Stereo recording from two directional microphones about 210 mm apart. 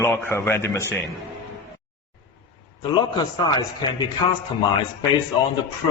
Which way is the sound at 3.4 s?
20° left (ahead or behind).